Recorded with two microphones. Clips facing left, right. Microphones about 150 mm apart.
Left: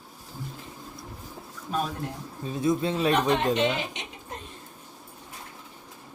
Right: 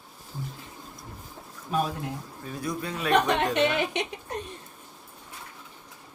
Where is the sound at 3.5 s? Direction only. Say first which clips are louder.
Right 1 dB; 65° right (ahead or behind).